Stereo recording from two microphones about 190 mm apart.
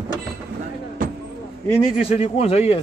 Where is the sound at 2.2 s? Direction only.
30° left (ahead or behind).